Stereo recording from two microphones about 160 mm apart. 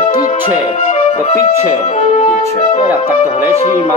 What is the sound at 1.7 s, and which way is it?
Speech, 45° left (ahead or behind).